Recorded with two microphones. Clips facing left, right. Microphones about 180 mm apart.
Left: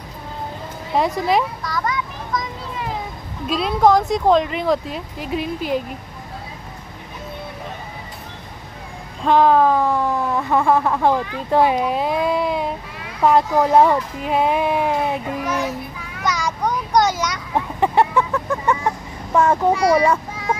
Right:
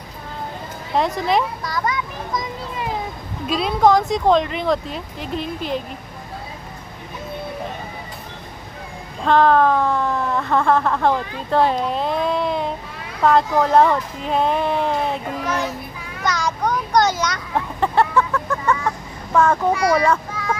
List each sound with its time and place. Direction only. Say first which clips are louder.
0.9 s speech: left 1 dB; 5° left (ahead or behind)
3.4 s speech: even; centre (ahead or behind)
9.2 s a sound: left 1 dB; 10° left (ahead or behind)
19.7 s a child's voice: left 2 dB; 30° left (ahead or behind)